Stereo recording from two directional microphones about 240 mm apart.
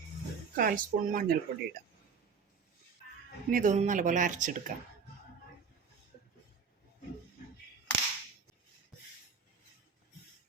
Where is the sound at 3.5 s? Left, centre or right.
Right.